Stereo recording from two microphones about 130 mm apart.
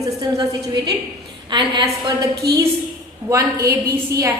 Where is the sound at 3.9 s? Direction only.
20° right (ahead or behind).